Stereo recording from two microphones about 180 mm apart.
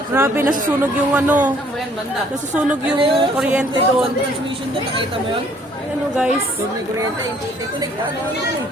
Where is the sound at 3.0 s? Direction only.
30° right (ahead or behind).